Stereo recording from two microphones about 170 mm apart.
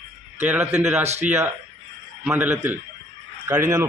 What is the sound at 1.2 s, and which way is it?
A man's voice, 10° right (ahead or behind).